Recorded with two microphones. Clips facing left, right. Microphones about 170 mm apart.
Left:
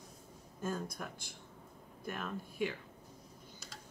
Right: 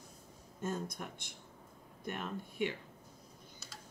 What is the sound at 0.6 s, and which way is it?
Speech, 20° right (ahead or behind).